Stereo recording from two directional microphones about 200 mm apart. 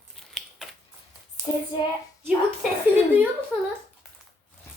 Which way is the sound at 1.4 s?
20° left (ahead or behind).